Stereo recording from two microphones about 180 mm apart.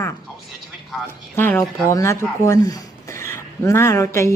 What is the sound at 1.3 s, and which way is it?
Speech, 10° left (ahead or behind).